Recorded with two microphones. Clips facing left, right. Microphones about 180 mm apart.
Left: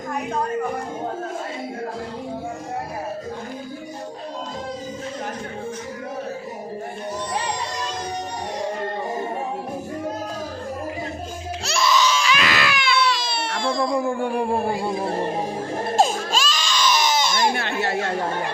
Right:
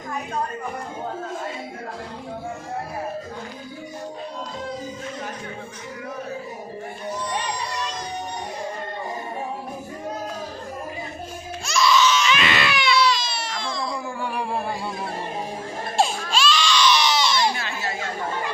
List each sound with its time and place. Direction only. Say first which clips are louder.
11.6 s music: right 2 dB; 60° left (ahead or behind)
11.9 s crying: right 1 dB; 40° left (ahead or behind)
12.4 s baby cry: even; centre (ahead or behind)
13.0 s baby cry: right 1 dB; 55° left (ahead or behind)
16.0 s baby cry: left 1 dB; 40° left (ahead or behind); by 18.5 s 65° left (ahead or behind)